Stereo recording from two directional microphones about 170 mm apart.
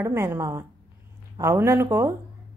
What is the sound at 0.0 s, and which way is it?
A woman's voice, 15° right (ahead or behind).